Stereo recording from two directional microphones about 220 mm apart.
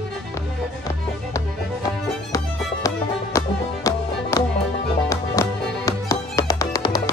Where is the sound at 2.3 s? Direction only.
15° left (ahead or behind).